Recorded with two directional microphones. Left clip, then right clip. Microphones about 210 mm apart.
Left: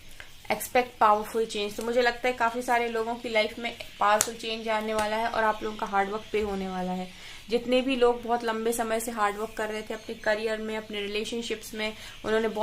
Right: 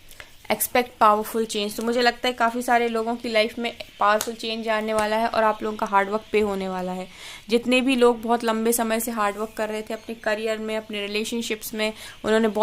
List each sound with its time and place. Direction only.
0.4 s a woman's voice: 50° right (ahead or behind)